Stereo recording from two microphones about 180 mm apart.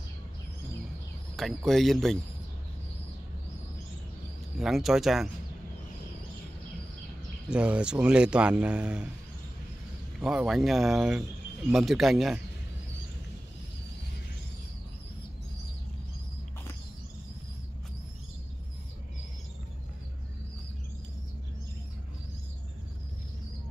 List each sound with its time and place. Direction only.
1.7 s speech: centre (ahead or behind)
4.6 s speech: centre (ahead or behind)
7.4 s speech: 5° right (ahead or behind)
10.2 s speech: 5° right (ahead or behind)